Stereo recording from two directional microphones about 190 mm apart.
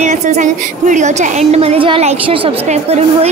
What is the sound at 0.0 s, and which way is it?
A woman's voice, 35° right (ahead or behind).